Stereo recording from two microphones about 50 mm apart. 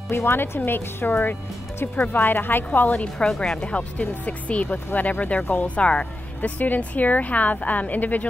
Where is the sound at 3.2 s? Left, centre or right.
Centre.